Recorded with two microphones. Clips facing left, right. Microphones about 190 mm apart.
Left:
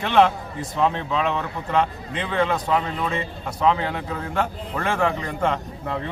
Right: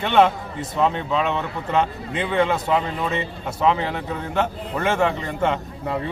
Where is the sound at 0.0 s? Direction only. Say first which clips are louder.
Right 1 dB; 5° right (ahead or behind).